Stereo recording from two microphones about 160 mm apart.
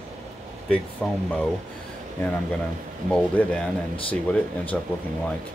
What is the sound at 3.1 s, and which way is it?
Speech, 5° left (ahead or behind).